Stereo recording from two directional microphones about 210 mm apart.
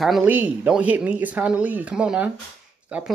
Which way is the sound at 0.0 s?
5° right (ahead or behind).